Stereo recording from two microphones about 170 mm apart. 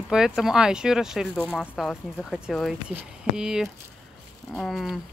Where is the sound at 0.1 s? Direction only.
5° right (ahead or behind).